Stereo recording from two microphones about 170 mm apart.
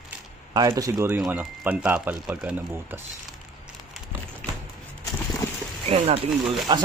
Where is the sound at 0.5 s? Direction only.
20° right (ahead or behind).